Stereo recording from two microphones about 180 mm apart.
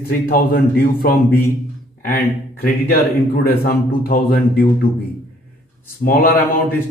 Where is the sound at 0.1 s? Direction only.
55° left (ahead or behind).